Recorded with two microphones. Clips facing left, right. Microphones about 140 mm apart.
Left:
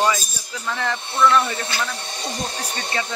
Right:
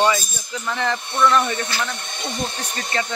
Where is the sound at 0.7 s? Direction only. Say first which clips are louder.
Even; centre (ahead or behind).